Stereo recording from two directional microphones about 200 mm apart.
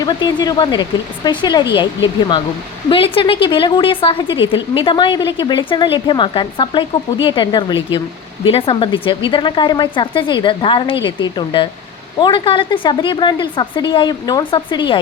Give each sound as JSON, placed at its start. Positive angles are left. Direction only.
{"t": 0.0, "sound": "a woman's voice", "side_deg": 20}
{"t": 2.9, "sound": "a woman's voice", "side_deg": 25}